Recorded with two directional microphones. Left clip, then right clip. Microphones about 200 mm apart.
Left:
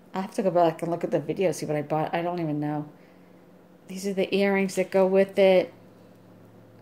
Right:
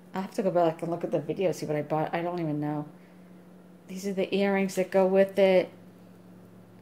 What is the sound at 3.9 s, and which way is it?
Speech, 5° left (ahead or behind).